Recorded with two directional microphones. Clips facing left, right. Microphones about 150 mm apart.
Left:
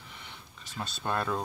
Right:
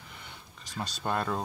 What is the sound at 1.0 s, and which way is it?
Speech, 5° right (ahead or behind).